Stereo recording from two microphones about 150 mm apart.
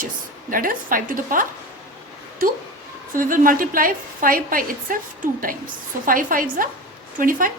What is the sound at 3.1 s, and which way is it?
A woman's voice, 65° right (ahead or behind).